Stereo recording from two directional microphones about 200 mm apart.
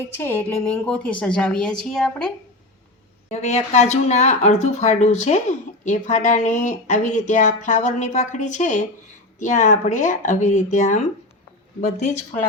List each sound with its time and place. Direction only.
0.2 s speech: 10° left (ahead or behind)
3.2 s speech: 35° left (ahead or behind)